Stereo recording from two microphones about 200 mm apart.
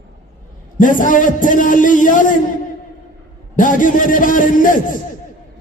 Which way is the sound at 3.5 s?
40° left (ahead or behind).